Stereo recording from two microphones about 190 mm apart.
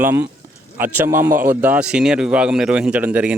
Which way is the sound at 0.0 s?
10° right (ahead or behind).